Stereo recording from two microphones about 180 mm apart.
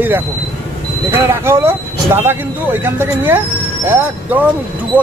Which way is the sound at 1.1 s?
15° right (ahead or behind).